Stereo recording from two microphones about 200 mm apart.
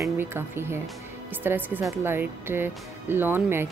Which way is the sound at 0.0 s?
10° right (ahead or behind).